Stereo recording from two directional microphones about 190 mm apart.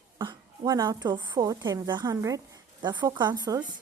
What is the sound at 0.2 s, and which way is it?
A woman's voice, 25° right (ahead or behind).